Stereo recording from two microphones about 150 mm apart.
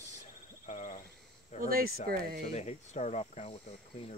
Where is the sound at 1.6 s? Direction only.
80° right.